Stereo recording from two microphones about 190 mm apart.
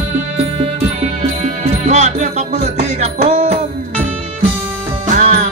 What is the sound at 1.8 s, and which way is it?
Music, 40° right (ahead or behind).